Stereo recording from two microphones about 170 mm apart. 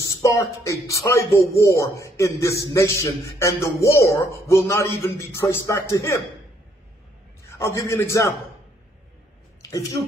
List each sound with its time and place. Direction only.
0.0 s a man's voice: 20° left (ahead or behind)
7.5 s a man's voice: 20° left (ahead or behind)
9.6 s speech: 20° left (ahead or behind)